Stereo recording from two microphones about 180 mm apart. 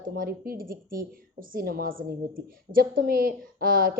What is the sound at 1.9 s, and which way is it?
Speech, 90° right.